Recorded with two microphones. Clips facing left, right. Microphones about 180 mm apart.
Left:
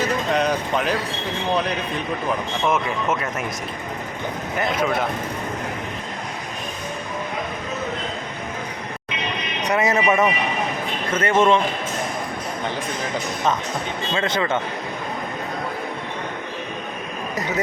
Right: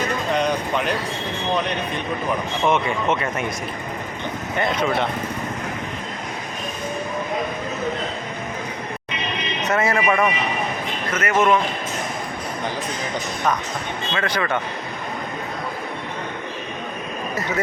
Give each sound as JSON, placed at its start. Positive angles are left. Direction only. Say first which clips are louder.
{"t": 0.3, "sound": "speech", "louder": "right 1 dB", "side_deg": 5}
{"t": 2.6, "sound": "speech", "louder": "right 2 dB", "side_deg": 0}
{"t": 4.5, "sound": "speech", "louder": "right 1 dB", "side_deg": 5}
{"t": 9.6, "sound": "speech", "louder": "left 1 dB", "side_deg": 15}
{"t": 14.1, "sound": "speech", "louder": "left 1 dB", "side_deg": 25}